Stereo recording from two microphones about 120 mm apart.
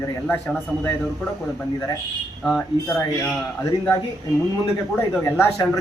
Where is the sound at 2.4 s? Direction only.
5° left (ahead or behind).